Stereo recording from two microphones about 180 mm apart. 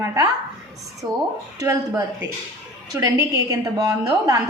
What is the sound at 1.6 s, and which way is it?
A woman's voice, 15° right (ahead or behind).